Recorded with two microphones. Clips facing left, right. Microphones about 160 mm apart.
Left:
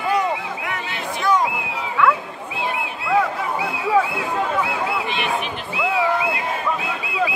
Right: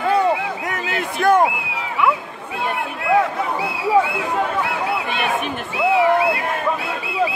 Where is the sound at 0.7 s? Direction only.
45° right (ahead or behind).